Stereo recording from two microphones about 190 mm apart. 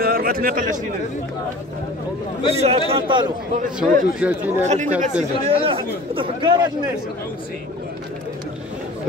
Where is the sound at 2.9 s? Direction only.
25° right (ahead or behind).